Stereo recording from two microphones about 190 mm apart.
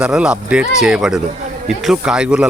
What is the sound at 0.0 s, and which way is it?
A man's voice, 5° right (ahead or behind).